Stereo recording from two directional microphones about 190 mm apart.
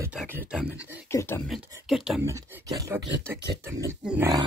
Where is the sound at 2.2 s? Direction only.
15° right (ahead or behind).